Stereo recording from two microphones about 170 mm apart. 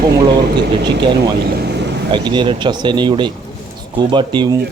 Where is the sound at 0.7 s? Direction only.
25° right (ahead or behind).